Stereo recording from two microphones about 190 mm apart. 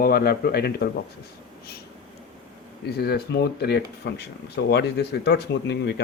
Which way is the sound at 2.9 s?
55° left (ahead or behind).